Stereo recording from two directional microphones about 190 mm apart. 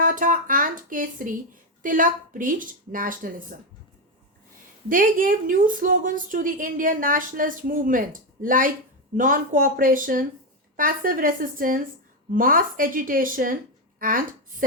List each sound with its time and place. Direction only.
0.0 s a sound: 45° right (ahead or behind)
1.8 s a woman's voice: 45° right (ahead or behind)
4.9 s a woman's voice: 45° right (ahead or behind)